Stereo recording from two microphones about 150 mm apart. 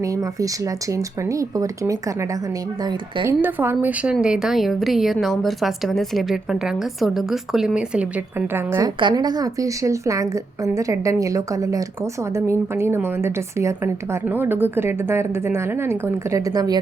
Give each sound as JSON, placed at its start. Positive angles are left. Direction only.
{"t": 0.0, "sound": "a woman's voice", "side_deg": -20}
{"t": 3.2, "sound": "a woman's voice", "side_deg": -15}
{"t": 9.0, "sound": "a woman's voice", "side_deg": -30}